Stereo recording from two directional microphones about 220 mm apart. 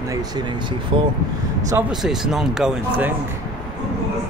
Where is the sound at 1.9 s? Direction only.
Centre (ahead or behind).